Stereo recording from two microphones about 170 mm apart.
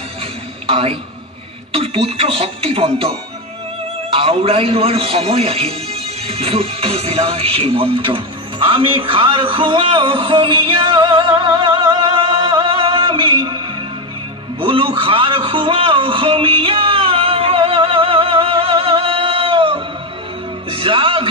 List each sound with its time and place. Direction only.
0.7 s a woman's voice: 35° right (ahead or behind)
14.6 s a sound: 30° right (ahead or behind)
20.7 s music: 30° right (ahead or behind)